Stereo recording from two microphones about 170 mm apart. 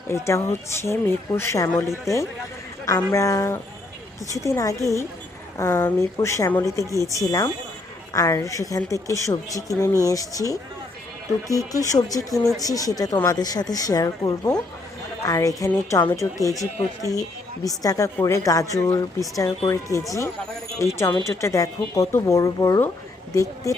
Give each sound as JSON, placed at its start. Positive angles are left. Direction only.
{"t": 0.1, "sound": "a woman's voice", "side_deg": 15}